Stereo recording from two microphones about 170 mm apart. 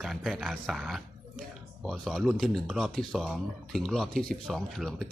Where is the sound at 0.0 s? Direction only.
Centre (ahead or behind).